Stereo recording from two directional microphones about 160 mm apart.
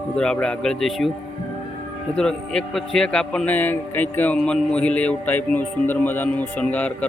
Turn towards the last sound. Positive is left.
turn(degrees=10)  # may be behind; listen again after turning